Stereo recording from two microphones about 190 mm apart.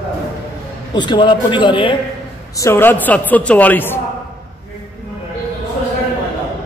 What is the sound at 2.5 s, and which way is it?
A woman's voice, 15° left (ahead or behind).